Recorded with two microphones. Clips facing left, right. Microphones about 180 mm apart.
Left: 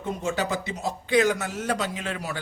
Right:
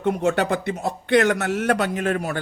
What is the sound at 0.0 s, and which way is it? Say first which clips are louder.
Speech: right 7 dB; 65° right (ahead or behind).